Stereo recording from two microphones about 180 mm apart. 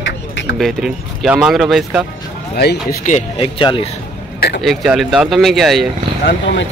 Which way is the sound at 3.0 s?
35° left (ahead or behind).